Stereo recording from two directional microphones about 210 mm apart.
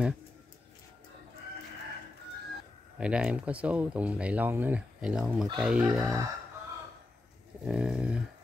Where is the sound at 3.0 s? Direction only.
5° right (ahead or behind).